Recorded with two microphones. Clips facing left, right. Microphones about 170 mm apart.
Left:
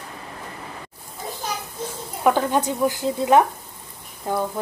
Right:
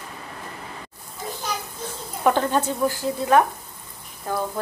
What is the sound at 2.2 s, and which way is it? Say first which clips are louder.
Speech: left 1 dB; 10° left (ahead or behind).